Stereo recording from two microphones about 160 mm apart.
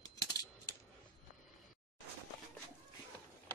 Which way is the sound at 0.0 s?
25° left (ahead or behind).